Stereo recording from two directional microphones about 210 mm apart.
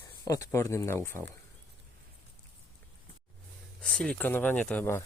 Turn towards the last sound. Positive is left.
turn(degrees=10)  # may be behind; listen again after turning